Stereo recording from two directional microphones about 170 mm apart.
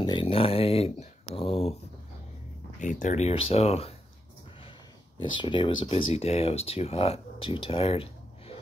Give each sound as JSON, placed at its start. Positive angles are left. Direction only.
{"t": 0.0, "sound": "a sound", "side_deg": 30}
{"t": 2.8, "sound": "speech", "side_deg": 45}
{"t": 5.2, "sound": "speech", "side_deg": 30}